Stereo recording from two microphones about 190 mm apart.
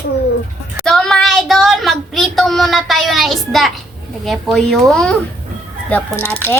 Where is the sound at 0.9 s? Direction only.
Centre (ahead or behind).